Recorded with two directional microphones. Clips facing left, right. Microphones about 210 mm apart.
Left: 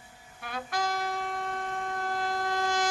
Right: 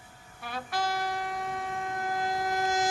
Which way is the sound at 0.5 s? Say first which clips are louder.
Even; 5° right (ahead or behind).